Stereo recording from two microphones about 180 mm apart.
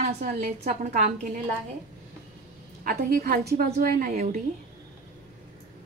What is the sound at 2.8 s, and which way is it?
A woman's voice, 55° right (ahead or behind).